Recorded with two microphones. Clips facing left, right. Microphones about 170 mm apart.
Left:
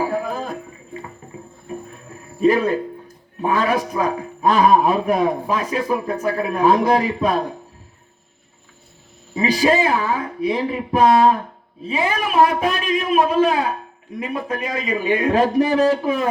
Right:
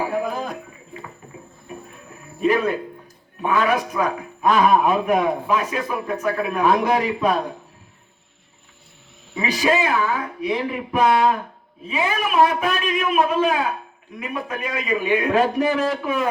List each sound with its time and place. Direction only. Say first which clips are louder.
0.0 s a sound: left 1 dB; 40° left (ahead or behind)
2.4 s a man's voice: left 3 dB; 35° left (ahead or behind)
9.3 s a man's voice: left 3 dB; 35° left (ahead or behind)